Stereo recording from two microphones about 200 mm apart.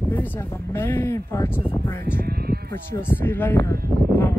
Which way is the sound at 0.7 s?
10° left (ahead or behind).